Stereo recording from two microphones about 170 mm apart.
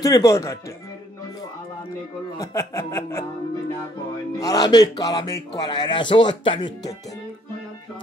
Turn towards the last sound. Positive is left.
turn(degrees=25)  # may be behind; listen again after turning